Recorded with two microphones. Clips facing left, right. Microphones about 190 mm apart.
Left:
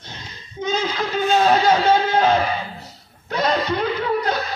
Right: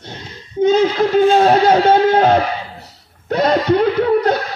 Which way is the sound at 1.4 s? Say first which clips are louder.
Right 5 dB; 55° right (ahead or behind).